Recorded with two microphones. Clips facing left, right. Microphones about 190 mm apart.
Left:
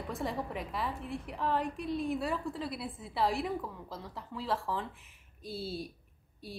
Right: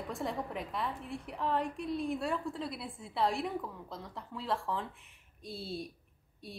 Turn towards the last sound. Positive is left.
turn(degrees=0)  # may be behind; listen again after turning